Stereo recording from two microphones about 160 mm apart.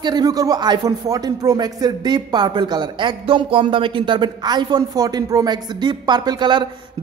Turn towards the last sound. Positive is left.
turn(degrees=-30)  # may be behind; listen again after turning